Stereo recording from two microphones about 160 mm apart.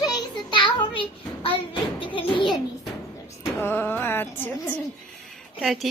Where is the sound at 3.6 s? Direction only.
15° left (ahead or behind).